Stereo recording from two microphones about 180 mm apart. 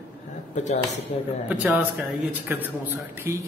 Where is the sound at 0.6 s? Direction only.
40° left (ahead or behind).